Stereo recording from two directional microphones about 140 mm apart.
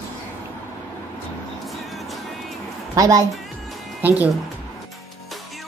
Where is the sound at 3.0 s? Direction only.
25° right (ahead or behind).